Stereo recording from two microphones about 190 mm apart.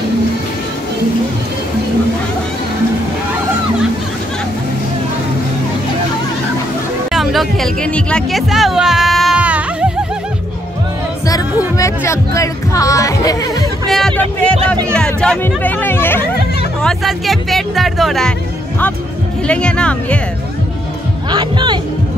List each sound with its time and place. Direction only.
7.1 s music: centre (ahead or behind)
11.7 s speech: 15° left (ahead or behind)
13.8 s a sound: centre (ahead or behind)
14.9 s speech: 5° left (ahead or behind)
16.8 s speech: centre (ahead or behind)
19.4 s speech: 5° left (ahead or behind)
21.3 s music: 25° right (ahead or behind)